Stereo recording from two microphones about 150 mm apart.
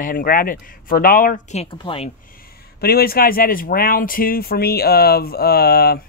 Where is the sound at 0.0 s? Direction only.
70° left (ahead or behind).